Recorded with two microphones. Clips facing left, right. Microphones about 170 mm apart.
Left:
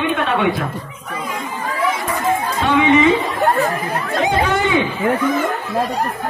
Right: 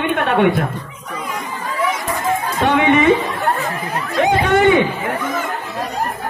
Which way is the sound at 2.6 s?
55° right (ahead or behind).